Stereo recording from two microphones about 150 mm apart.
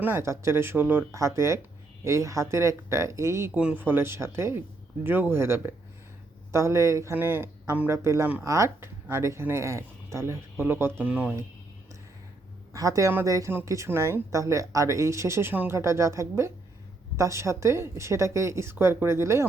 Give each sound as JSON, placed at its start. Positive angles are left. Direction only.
{"t": 0.0, "sound": "speech", "side_deg": -15}
{"t": 12.7, "sound": "speech", "side_deg": -20}